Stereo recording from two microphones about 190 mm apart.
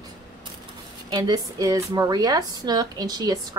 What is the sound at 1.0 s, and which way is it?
A woman's voice, 20° right (ahead or behind).